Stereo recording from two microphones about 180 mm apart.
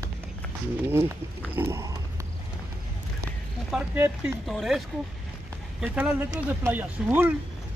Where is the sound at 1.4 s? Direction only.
10° right (ahead or behind).